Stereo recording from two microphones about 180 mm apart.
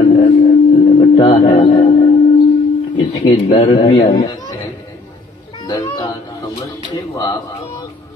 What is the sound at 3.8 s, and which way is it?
Speech, 25° left (ahead or behind).